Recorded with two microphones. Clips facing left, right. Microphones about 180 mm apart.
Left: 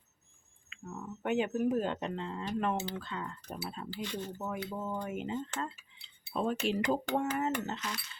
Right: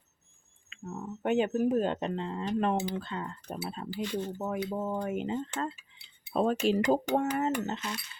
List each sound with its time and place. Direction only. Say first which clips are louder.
0.9 s speech: right 4 dB; 30° right (ahead or behind)
4.4 s speech: right 5 dB; 35° right (ahead or behind)
7.3 s speech: right 3 dB; 25° right (ahead or behind)